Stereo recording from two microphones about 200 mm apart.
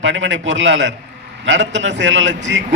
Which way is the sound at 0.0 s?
70° right (ahead or behind).